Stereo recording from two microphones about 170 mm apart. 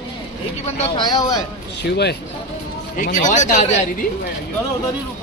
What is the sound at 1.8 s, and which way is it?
Speech, 80° left.